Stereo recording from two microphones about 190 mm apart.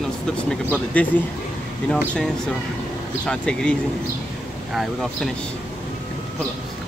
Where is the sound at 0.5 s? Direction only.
10° left (ahead or behind).